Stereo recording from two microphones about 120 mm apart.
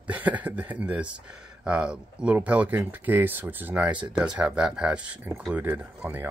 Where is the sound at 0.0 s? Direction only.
10° right (ahead or behind).